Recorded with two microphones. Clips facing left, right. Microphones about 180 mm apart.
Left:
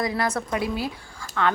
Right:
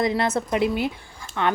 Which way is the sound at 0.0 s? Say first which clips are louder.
Right 3 dB; 25° right (ahead or behind).